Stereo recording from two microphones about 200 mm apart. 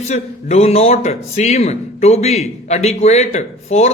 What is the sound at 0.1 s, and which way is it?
Speech, 35° left (ahead or behind).